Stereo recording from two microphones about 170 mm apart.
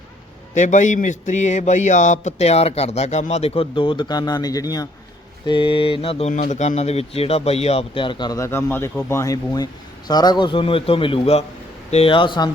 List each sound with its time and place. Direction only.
0.5 s a man's voice: 45° left (ahead or behind); by 12.5 s 30° left (ahead or behind)